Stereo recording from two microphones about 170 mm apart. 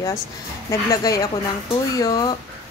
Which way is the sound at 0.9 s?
20° left (ahead or behind).